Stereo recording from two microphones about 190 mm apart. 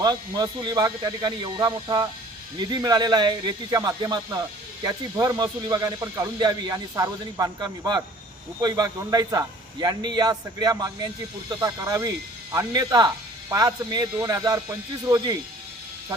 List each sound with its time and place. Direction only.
0.0 s speech: 20° right (ahead or behind)